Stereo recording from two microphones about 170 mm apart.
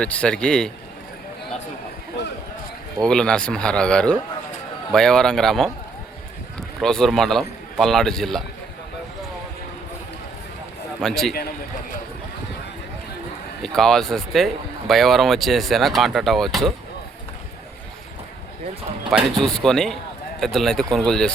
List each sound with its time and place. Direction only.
0.0 s speech: 5° left (ahead or behind)
2.2 s basketball bounce: 85° left
3.0 s a man's voice: 5° left (ahead or behind)
11.0 s speech: centre (ahead or behind)
13.6 s speech: 5° left (ahead or behind)
19.1 s speech: centre (ahead or behind)